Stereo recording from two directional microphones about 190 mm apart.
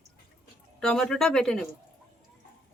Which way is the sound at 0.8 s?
5° left (ahead or behind).